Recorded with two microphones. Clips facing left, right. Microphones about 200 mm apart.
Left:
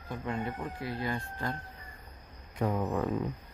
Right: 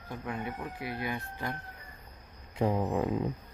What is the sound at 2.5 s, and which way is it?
Speech, 25° right (ahead or behind).